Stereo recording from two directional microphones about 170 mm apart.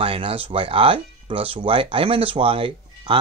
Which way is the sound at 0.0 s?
35° right (ahead or behind).